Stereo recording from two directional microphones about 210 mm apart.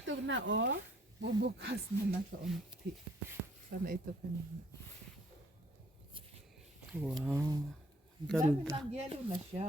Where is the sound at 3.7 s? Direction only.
50° right (ahead or behind).